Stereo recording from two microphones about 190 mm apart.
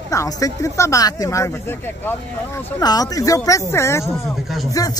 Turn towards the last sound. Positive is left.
turn(degrees=20)  # may be behind; listen again after turning